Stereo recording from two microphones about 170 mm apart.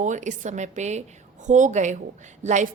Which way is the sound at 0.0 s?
45° right (ahead or behind).